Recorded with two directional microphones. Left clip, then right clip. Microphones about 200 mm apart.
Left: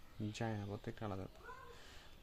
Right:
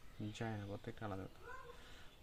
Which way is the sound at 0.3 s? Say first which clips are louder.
Left 2 dB; 30° left (ahead or behind).